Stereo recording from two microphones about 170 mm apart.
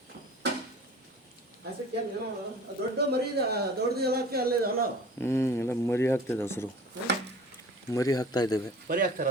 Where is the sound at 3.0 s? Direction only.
70° right (ahead or behind).